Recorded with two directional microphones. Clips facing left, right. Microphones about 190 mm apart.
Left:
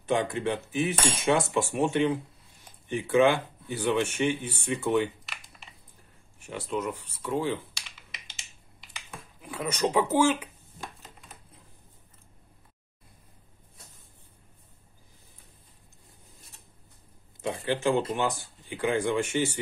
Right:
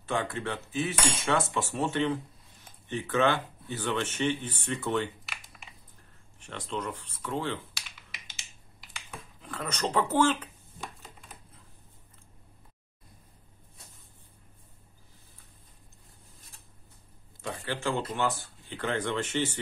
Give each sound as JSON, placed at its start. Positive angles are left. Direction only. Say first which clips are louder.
{"t": 0.0, "sound": "speech", "louder": "left 5 dB", "side_deg": 20}
{"t": 5.2, "sound": "computer keyboard", "louder": "even", "side_deg": 0}
{"t": 6.4, "sound": "speech", "louder": "left 4 dB", "side_deg": 10}
{"t": 7.7, "sound": "computer keyboard", "louder": "even", "side_deg": 0}
{"t": 9.4, "sound": "speech", "louder": "left 5 dB", "side_deg": 10}
{"t": 10.8, "sound": "a sound", "louder": "even", "side_deg": 0}
{"t": 17.4, "sound": "speech", "louder": "left 6 dB", "side_deg": 20}